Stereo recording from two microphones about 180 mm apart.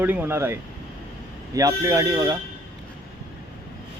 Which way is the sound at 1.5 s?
20° right (ahead or behind).